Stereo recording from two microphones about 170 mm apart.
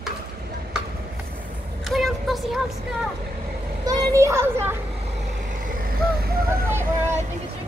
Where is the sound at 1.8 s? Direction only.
Centre (ahead or behind).